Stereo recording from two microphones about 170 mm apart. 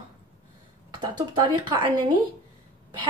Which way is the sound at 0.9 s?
25° right (ahead or behind).